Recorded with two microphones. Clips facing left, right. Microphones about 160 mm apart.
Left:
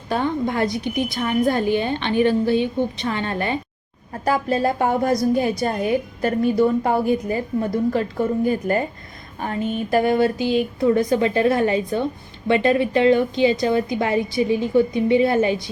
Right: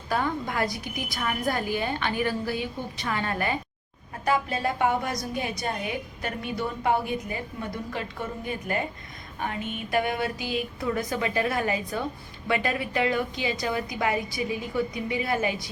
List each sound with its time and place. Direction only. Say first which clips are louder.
0.1 s a woman's voice: left 6 dB; 25° left (ahead or behind)
4.3 s a woman's voice: left 6 dB; 40° left (ahead or behind)